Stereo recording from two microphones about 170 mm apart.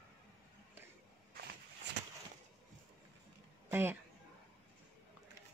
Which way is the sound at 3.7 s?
15° right (ahead or behind).